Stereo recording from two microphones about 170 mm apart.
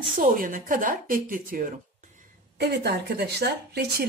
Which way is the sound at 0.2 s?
55° right (ahead or behind).